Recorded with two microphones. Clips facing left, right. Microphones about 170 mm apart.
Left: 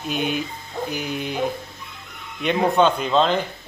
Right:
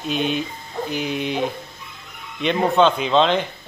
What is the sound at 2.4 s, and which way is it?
Speech, 10° left (ahead or behind).